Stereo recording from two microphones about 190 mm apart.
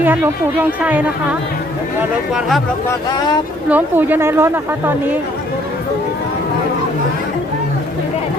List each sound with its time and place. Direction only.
0.8 s a woman's voice: 10° right (ahead or behind)
3.7 s a woman's voice: 10° right (ahead or behind)